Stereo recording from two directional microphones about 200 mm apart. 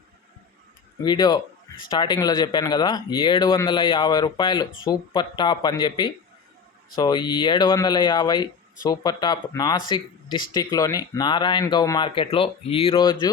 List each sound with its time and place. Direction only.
1.0 s speech: 20° left (ahead or behind)